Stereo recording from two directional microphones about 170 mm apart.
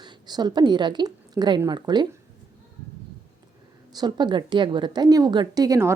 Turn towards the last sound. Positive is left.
turn(degrees=-20)  # may be behind; listen again after turning